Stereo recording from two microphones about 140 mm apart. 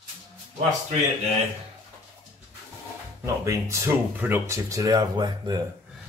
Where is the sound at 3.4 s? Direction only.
20° right (ahead or behind).